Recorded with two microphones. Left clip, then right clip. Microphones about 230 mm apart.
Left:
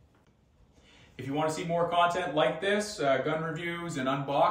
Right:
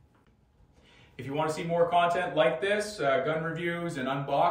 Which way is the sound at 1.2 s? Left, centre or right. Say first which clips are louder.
Even; centre.